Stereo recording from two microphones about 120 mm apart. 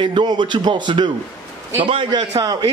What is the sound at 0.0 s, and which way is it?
A man's voice, 40° right (ahead or behind).